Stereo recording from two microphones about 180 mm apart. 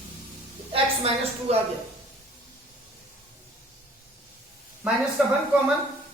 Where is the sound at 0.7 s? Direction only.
35° right (ahead or behind).